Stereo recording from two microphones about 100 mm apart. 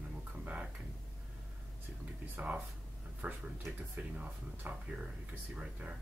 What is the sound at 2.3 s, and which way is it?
Speech, 15° right (ahead or behind).